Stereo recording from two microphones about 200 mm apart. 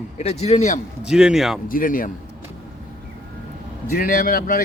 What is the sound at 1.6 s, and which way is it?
Speech, 45° left (ahead or behind).